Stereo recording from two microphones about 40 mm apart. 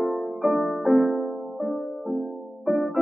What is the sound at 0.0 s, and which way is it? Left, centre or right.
Music, centre.